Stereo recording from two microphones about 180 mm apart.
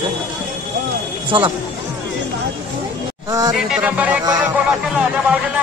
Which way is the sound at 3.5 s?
5° right (ahead or behind).